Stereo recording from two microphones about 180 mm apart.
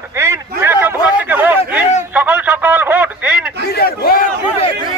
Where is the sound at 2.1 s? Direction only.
10° right (ahead or behind).